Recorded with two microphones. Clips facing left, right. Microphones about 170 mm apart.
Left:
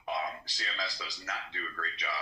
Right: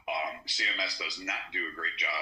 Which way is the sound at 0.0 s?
20° right (ahead or behind).